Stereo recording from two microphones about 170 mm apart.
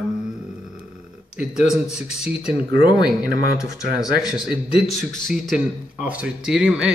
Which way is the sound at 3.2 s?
65° right (ahead or behind).